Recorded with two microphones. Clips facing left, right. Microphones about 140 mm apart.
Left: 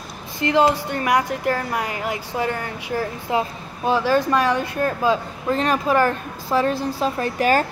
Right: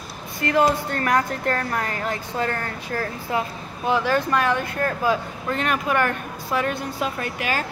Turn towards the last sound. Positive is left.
turn(degrees=35)  # may be behind; listen again after turning